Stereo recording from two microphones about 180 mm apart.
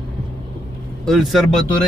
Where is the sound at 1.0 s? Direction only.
Centre (ahead or behind).